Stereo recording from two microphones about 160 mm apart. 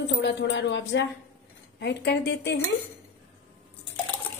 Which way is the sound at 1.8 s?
90° left.